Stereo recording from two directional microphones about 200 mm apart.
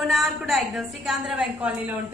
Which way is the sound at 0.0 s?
Centre (ahead or behind).